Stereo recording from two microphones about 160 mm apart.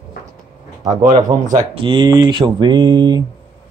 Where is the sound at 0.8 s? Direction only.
25° right (ahead or behind).